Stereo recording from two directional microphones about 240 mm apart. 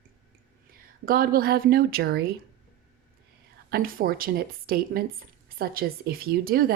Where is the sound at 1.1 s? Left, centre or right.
Right.